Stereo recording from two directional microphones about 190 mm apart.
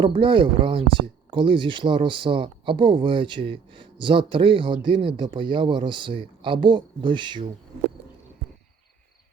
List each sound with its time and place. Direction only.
0.0 s speech: 25° right (ahead or behind)